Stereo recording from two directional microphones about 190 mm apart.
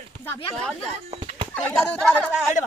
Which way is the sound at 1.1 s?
35° right (ahead or behind).